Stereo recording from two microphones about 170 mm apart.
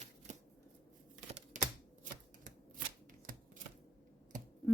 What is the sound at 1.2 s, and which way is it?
Typing, 45° right (ahead or behind).